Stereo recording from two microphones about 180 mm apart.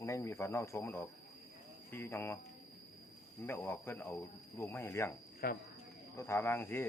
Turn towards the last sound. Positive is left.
turn(degrees=10)  # may be behind; listen again after turning